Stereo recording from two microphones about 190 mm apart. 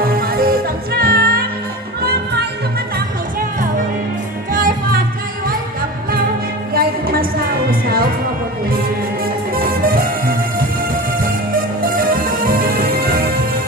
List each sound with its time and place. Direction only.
0.0 s music: 50° right (ahead or behind)
4.5 s music: 45° right (ahead or behind)
6.7 s music: 50° right (ahead or behind)
9.5 s music: 50° right (ahead or behind)
11.8 s music: 50° right (ahead or behind)